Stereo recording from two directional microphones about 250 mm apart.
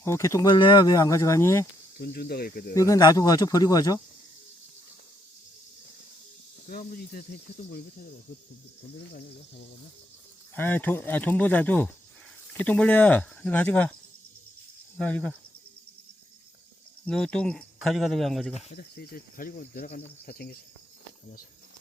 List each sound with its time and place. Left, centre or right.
0.0 s speech: centre
2.0 s cricket: left
2.7 s speech: centre
6.7 s cricket: left
10.5 s speech: centre
14.9 s speech: centre
17.1 s speech: centre
18.5 s speech: left
18.9 s cricket: left